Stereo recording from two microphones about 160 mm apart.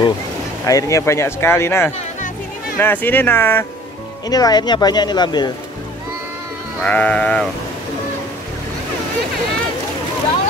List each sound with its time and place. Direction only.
0.7 s speech: 20° left (ahead or behind)
4.3 s speech: 25° left (ahead or behind)
6.8 s speech: 10° left (ahead or behind)